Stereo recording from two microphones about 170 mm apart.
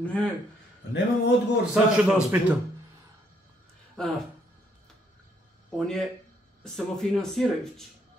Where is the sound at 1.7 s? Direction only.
5° right (ahead or behind).